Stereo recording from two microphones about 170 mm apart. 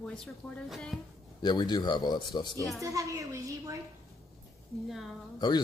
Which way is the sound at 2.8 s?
20° right (ahead or behind).